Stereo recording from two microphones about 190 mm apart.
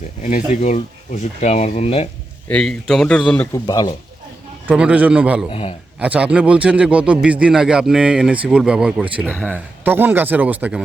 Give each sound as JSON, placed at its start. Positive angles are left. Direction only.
{"t": 0.2, "sound": "speech", "side_deg": 40}
{"t": 2.5, "sound": "a man's voice", "side_deg": 5}
{"t": 3.7, "sound": "speech", "side_deg": 20}
{"t": 4.6, "sound": "a man's voice", "side_deg": -5}
{"t": 5.5, "sound": "speech", "side_deg": 30}
{"t": 6.0, "sound": "a man's voice", "side_deg": -5}